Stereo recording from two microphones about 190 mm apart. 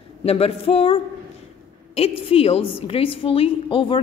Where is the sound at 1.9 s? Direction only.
30° left (ahead or behind).